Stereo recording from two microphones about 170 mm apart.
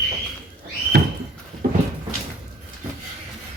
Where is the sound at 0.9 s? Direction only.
70° right (ahead or behind).